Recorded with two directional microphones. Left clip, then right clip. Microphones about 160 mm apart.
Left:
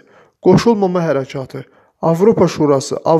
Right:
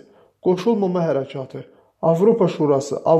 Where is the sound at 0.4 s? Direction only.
40° left (ahead or behind).